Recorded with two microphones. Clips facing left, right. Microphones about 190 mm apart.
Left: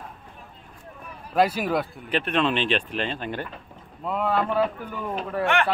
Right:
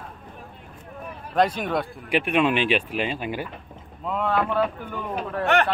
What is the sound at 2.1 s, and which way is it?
A man's voice, 10° right (ahead or behind).